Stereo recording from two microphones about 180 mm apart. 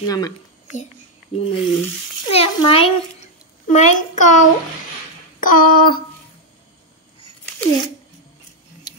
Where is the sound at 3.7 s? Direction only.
45° left (ahead or behind).